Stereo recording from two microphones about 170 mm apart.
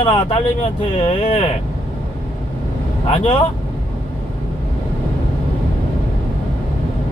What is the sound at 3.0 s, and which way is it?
Speech, 40° left (ahead or behind).